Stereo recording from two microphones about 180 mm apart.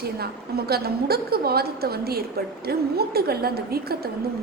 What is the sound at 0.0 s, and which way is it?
A woman's voice, 60° right (ahead or behind).